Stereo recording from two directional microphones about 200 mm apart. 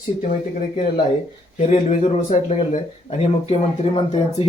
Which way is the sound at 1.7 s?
40° left (ahead or behind).